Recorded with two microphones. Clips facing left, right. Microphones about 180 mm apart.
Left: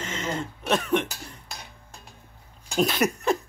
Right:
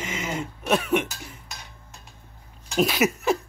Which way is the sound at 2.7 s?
Centre (ahead or behind).